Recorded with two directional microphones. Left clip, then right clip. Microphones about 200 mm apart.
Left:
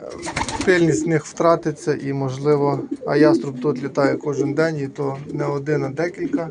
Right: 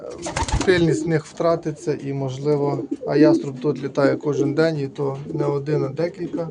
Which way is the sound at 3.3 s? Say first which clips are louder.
Left 1 dB; 25° right (ahead or behind).